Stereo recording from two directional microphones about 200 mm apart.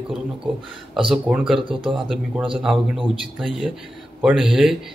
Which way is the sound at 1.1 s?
5° right (ahead or behind).